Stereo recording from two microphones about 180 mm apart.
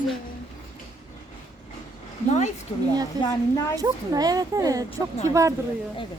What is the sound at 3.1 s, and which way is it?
Speech, 20° right (ahead or behind).